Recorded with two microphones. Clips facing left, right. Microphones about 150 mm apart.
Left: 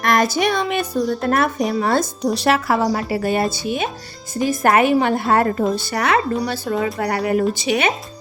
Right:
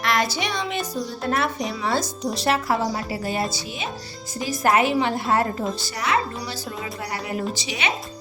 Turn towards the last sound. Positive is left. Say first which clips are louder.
# left 9 dB
turn(degrees=55)  # may be behind; listen again after turning